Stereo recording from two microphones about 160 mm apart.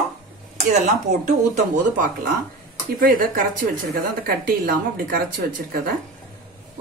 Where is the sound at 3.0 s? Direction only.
60° right (ahead or behind).